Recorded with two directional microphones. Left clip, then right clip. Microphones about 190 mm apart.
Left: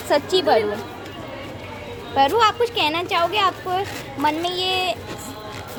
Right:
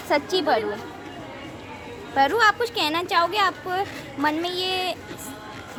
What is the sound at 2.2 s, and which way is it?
Speech, 15° right (ahead or behind).